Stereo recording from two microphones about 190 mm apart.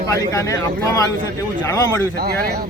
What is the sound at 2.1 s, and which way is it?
Speech, 55° right (ahead or behind).